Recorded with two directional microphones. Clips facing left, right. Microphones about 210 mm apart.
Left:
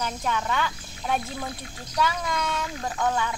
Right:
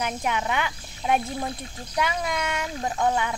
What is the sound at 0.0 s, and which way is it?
Speech, 15° right (ahead or behind).